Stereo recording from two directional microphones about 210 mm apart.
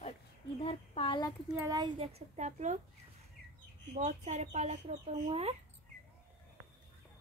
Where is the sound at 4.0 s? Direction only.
35° right (ahead or behind).